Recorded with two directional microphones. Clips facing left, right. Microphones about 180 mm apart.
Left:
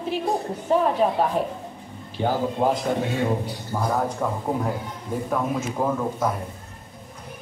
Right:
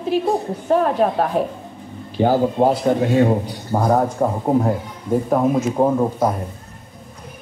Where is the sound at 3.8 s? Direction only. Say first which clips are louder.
Right 7 dB; 45° right (ahead or behind).